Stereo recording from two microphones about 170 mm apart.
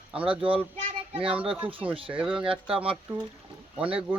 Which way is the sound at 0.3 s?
30° right (ahead or behind).